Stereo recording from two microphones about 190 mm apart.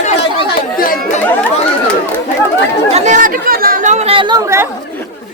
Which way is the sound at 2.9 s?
40° right (ahead or behind).